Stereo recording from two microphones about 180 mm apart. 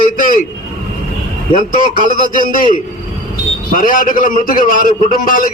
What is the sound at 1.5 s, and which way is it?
A man's voice, 50° left (ahead or behind).